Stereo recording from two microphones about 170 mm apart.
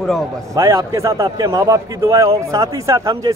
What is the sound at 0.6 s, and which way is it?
A man's voice, 15° right (ahead or behind).